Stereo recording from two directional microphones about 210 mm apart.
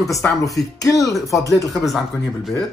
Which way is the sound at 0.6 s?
15° left (ahead or behind).